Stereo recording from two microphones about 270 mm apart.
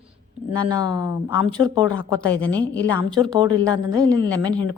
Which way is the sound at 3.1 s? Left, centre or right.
Centre.